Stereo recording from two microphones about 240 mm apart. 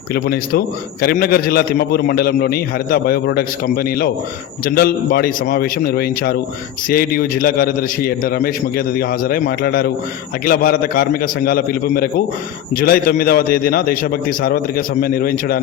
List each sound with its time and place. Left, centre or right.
0.1 s a man's voice: left